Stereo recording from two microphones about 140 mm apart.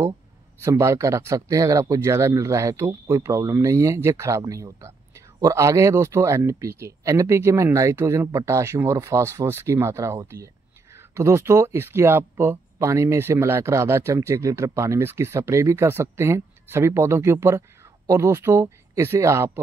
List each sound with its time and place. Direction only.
0.6 s speech: 20° right (ahead or behind)